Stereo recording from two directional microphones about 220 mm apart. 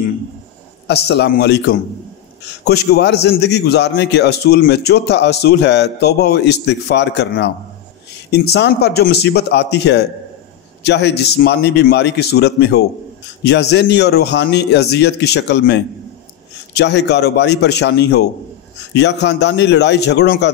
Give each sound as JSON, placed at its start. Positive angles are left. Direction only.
{"t": 0.8, "sound": "a man's voice", "side_deg": 50}